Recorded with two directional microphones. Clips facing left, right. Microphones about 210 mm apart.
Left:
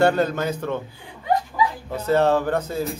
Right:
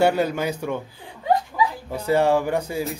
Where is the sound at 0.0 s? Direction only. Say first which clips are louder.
Left 1 dB; 10° right (ahead or behind).